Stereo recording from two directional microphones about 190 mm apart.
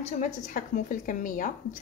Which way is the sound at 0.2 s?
45° left (ahead or behind).